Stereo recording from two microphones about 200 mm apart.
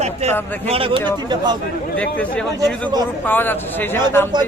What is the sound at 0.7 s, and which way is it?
Speech, 25° right (ahead or behind).